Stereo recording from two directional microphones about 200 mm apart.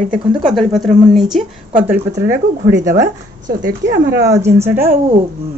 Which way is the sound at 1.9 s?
10° right (ahead or behind).